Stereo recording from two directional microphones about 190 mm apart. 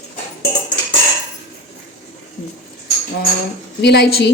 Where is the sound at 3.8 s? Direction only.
60° left (ahead or behind).